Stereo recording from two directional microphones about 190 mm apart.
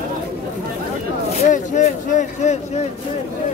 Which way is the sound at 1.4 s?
40° left (ahead or behind).